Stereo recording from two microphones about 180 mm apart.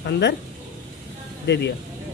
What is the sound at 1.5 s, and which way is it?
Speech, 75° left (ahead or behind).